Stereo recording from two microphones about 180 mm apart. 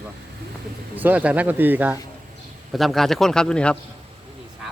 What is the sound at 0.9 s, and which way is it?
Speech, 10° right (ahead or behind).